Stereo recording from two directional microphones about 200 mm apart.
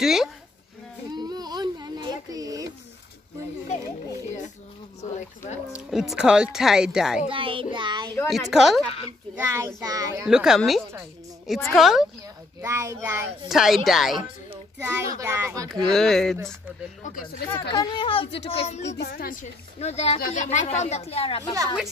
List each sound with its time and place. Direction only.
0.0 s a woman's voice: centre (ahead or behind)
1.1 s a sound: 20° right (ahead or behind)
5.7 s a woman's voice: centre (ahead or behind)
7.2 s a child's voice: 25° right (ahead or behind)
8.3 s a woman's voice: centre (ahead or behind)
9.3 s a child's voice: 15° right (ahead or behind)
10.2 s a woman's voice: centre (ahead or behind)
12.6 s a woman's voice: 15° right (ahead or behind)
14.8 s a child's voice: 15° right (ahead or behind)
15.9 s a woman's voice: centre (ahead or behind)
17.0 s a woman's voice: 45° left (ahead or behind)
17.6 s a woman's voice: 25° left (ahead or behind)
18.9 s a woman's voice: 55° left (ahead or behind)
19.8 s a woman's voice: 30° left (ahead or behind)